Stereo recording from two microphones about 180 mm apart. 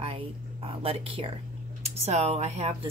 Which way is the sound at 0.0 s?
30° right (ahead or behind).